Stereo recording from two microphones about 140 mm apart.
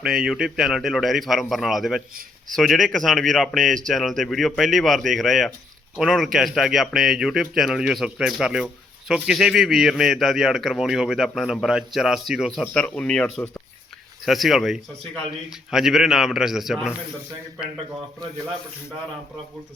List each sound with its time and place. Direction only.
0.0 s a man's voice: 5° right (ahead or behind)
12.6 s a man's voice: 10° left (ahead or behind)